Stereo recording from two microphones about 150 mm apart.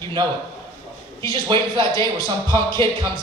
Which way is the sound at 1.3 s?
30° right (ahead or behind).